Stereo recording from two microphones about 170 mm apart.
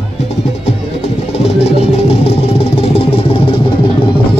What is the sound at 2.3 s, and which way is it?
Vehicle, 35° left (ahead or behind).